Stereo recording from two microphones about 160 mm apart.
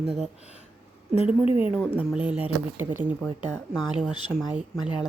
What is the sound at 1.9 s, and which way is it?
Speech, 10° right (ahead or behind).